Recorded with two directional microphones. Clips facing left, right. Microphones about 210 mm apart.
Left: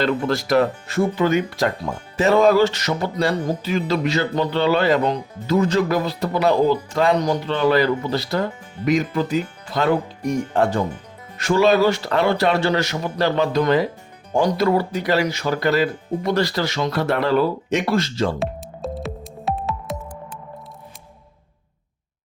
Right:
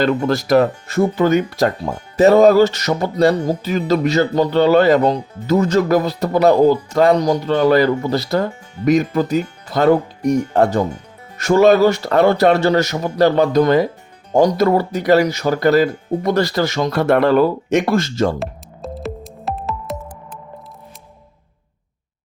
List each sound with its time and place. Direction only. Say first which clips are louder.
0.0 s speech: right 4 dB; 40° right (ahead or behind)
2.1 s music: right 5 dB; 40° right (ahead or behind)
18.3 s music: left 1 dB; centre (ahead or behind)